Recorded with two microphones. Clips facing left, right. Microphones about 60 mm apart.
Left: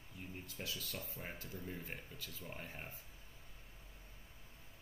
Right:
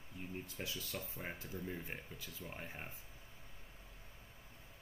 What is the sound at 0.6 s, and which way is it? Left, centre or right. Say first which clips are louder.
Speech: even; right.